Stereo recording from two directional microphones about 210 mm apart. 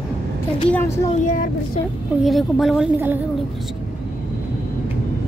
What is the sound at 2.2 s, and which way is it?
Speech, centre (ahead or behind).